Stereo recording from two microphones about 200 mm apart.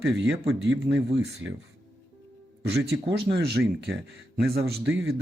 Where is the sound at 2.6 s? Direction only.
55° right (ahead or behind).